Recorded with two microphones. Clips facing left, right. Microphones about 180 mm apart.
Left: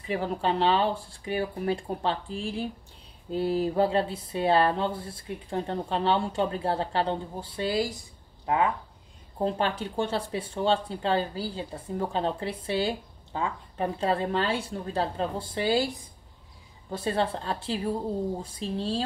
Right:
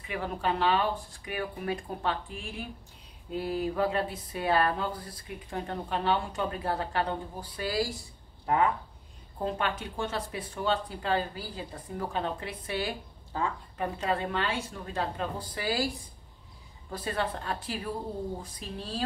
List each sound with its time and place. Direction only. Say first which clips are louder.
0.0 s speech: left 4 dB; 30° left (ahead or behind)
9.4 s a woman's voice: left 4 dB; 30° left (ahead or behind)